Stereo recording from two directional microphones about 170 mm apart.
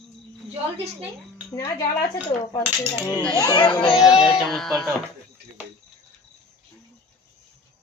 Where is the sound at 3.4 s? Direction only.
25° left (ahead or behind).